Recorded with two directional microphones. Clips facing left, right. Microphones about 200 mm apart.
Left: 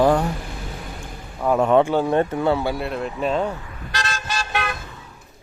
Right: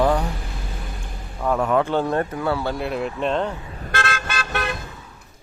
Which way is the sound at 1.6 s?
25° left (ahead or behind).